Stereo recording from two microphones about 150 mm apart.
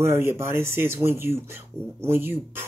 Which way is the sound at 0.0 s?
15° right (ahead or behind).